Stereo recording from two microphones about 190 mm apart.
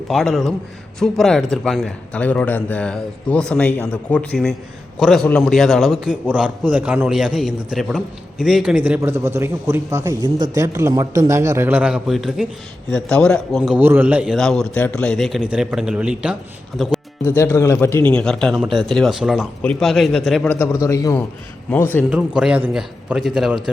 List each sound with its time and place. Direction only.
0.1 s a man's voice: centre (ahead or behind)
13.7 s a man's voice: 10° right (ahead or behind)
17.3 s a man's voice: 15° left (ahead or behind)
22.1 s a man's voice: 5° right (ahead or behind)